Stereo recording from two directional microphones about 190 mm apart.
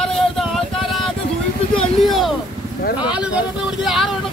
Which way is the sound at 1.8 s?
Centre (ahead or behind).